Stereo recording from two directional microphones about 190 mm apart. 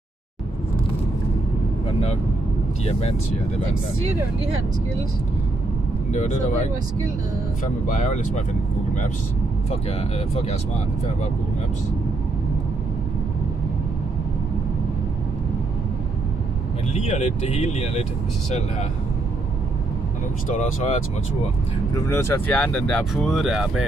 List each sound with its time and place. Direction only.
2.9 s speech: 35° left (ahead or behind)
6.1 s speech: 40° left (ahead or behind)
9.7 s speech: 30° left (ahead or behind)
16.9 s speech: 35° left (ahead or behind)
20.4 s speech: 40° left (ahead or behind)
21.9 s speech: 10° left (ahead or behind)